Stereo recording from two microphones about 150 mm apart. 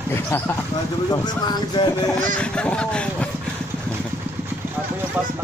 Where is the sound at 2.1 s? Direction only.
5° left (ahead or behind).